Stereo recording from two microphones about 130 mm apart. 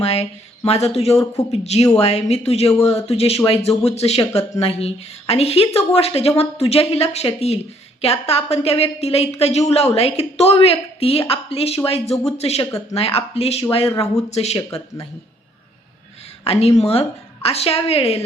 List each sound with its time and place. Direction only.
0.0 s a woman's voice: 50° left (ahead or behind)
16.4 s a woman's voice: 50° left (ahead or behind)